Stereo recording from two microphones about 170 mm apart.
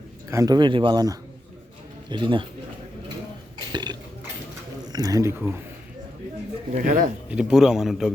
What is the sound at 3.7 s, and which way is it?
Burping, 25° right (ahead or behind).